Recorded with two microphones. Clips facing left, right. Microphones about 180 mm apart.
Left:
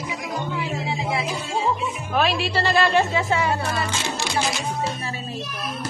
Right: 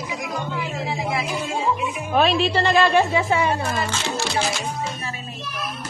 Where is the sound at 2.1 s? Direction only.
20° right (ahead or behind).